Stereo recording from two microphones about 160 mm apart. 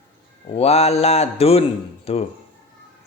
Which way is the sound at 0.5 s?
40° left (ahead or behind).